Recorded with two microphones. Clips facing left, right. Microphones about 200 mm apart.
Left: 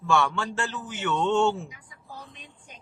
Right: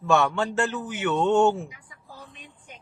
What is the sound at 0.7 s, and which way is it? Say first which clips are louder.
Speech: right 3 dB; 60° right (ahead or behind).